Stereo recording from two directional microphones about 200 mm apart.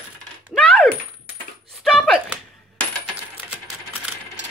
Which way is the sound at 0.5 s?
Centre (ahead or behind).